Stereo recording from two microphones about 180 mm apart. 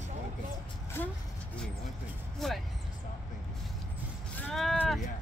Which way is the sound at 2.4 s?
Centre (ahead or behind).